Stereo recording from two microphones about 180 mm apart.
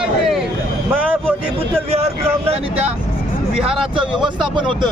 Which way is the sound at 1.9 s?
35° right (ahead or behind).